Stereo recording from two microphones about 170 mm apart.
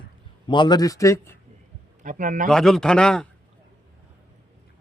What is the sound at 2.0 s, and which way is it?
Speech, 50° right (ahead or behind).